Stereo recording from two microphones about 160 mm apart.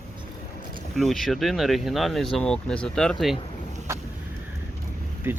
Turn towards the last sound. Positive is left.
turn(degrees=-15)  # may be behind; listen again after turning